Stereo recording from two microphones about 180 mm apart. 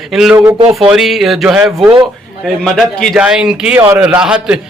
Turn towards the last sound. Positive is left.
turn(degrees=-5)  # may be behind; listen again after turning